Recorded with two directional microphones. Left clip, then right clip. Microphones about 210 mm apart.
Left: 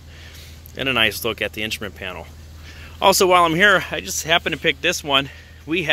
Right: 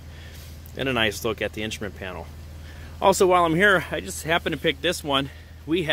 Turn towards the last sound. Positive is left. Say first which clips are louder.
# left 2 dB
turn(degrees=5)  # may be behind; listen again after turning